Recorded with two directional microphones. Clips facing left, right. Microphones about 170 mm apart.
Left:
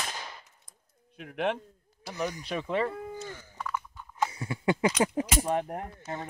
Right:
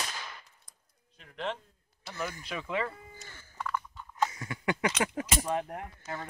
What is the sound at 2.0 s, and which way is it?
Speech, 15° left (ahead or behind).